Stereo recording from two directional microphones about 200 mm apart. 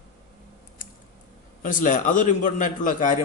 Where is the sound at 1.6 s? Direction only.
40° left (ahead or behind).